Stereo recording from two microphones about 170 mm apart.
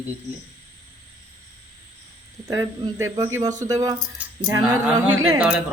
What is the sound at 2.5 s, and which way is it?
Speech, 20° right (ahead or behind).